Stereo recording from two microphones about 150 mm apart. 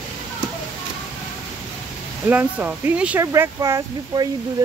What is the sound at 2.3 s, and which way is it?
Speech, 10° right (ahead or behind).